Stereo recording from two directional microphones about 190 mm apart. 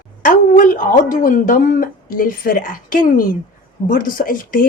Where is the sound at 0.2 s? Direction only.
45° left (ahead or behind).